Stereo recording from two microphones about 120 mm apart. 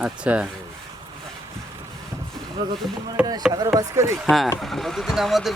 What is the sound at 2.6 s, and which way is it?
Speech, 35° right (ahead or behind).